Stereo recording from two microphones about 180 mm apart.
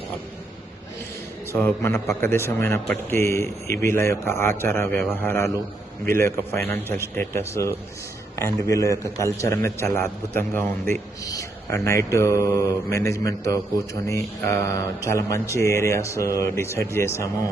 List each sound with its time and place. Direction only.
1.5 s speech: 15° left (ahead or behind)
6.7 s speech: 10° left (ahead or behind)